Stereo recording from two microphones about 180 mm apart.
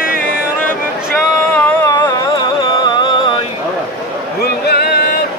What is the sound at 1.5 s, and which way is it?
Music, 10° left (ahead or behind).